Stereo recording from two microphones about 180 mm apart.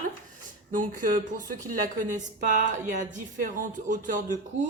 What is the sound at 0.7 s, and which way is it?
Speech, 45° right (ahead or behind).